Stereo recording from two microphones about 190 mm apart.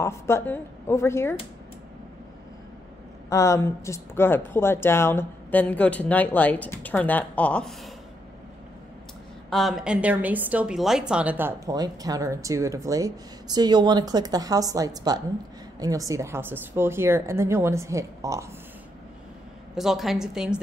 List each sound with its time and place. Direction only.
0.0 s speech: 15° left (ahead or behind)
3.3 s speech: 15° left (ahead or behind)
9.5 s a woman's voice: centre (ahead or behind); by 18.4 s 15° right (ahead or behind)
19.7 s a woman's voice: centre (ahead or behind)